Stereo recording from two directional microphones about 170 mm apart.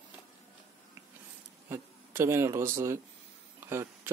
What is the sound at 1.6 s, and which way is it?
Speech, 15° right (ahead or behind).